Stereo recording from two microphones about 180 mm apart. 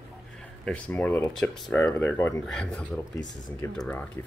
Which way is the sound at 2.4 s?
5° left (ahead or behind).